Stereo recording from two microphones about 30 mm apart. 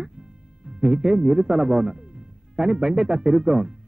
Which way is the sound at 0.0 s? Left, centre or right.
Right.